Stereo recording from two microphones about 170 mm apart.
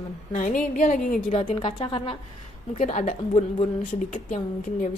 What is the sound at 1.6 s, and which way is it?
Speech, 30° left (ahead or behind).